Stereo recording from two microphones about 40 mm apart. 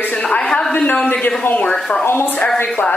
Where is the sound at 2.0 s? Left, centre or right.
Left.